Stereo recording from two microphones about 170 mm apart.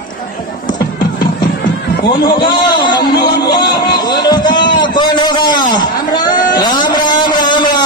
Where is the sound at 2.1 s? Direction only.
25° left (ahead or behind).